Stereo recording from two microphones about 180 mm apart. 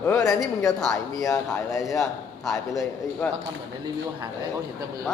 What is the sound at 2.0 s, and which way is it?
Speech, centre (ahead or behind).